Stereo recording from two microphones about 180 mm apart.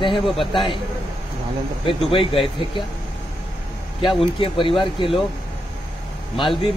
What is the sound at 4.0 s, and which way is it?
Speech, 30° left (ahead or behind).